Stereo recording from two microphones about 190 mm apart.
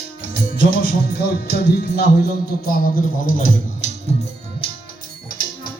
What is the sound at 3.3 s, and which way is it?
Speech, 45° left (ahead or behind).